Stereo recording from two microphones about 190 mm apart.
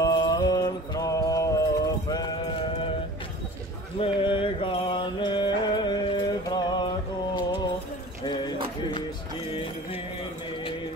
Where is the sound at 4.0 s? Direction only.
25° left (ahead or behind).